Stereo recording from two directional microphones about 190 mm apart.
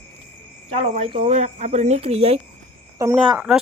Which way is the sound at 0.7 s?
35° right (ahead or behind).